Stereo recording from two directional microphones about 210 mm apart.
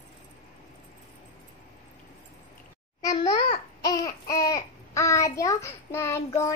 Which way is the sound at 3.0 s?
20° left (ahead or behind).